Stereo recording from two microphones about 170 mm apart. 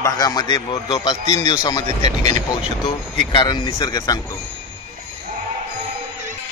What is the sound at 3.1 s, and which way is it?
A man's voice, 25° left (ahead or behind).